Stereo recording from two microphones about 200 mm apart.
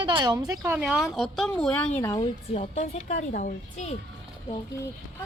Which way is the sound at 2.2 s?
30° left (ahead or behind).